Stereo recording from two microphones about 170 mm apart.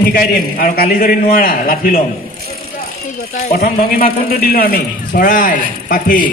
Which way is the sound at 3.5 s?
60° left (ahead or behind).